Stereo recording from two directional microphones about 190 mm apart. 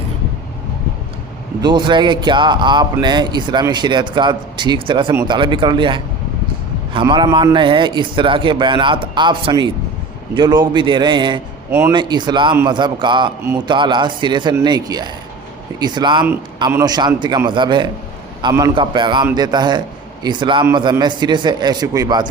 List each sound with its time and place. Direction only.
1.6 s a man's voice: 25° right (ahead or behind)